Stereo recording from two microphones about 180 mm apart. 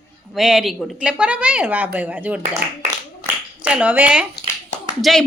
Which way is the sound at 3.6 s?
5° right (ahead or behind).